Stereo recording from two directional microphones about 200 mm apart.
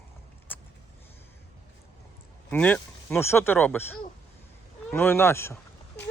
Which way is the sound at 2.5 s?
5° left (ahead or behind).